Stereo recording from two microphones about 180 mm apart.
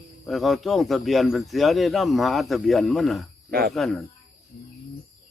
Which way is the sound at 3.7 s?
Centre (ahead or behind).